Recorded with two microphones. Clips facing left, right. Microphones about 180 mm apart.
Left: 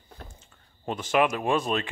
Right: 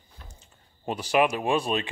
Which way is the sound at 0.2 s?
55° left (ahead or behind).